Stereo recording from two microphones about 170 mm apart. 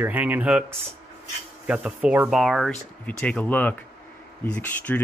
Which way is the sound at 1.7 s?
5° right (ahead or behind).